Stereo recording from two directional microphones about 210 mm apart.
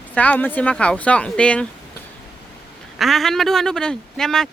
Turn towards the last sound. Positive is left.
turn(degrees=0)  # may be behind; listen again after turning